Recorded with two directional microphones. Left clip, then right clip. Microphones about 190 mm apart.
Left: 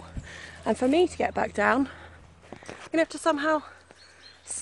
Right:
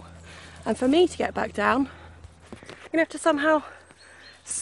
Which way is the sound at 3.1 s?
20° right (ahead or behind).